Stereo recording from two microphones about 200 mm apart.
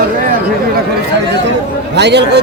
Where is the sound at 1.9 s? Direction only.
60° right (ahead or behind).